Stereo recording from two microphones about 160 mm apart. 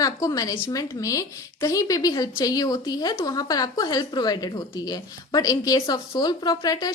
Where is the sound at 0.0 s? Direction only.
20° left (ahead or behind).